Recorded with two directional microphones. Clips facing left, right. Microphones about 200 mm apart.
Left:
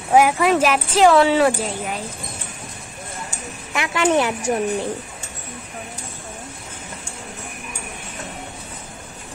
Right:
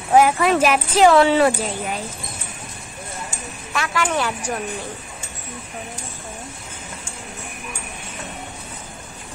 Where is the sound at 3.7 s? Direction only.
20° left (ahead or behind).